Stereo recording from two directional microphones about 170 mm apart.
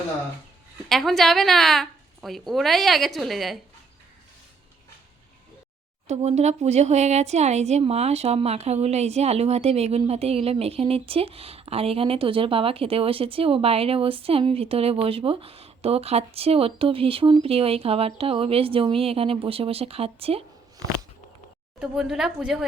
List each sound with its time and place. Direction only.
0.9 s a woman's voice: centre (ahead or behind)
6.1 s speech: 40° right (ahead or behind)
21.8 s a woman's voice: 5° right (ahead or behind)